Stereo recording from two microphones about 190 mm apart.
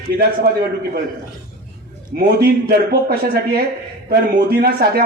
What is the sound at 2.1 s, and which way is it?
A man's voice, 55° right (ahead or behind).